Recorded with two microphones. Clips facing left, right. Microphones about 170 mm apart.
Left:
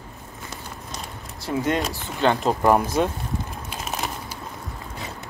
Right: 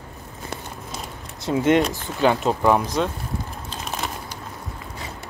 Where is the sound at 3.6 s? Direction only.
Centre (ahead or behind).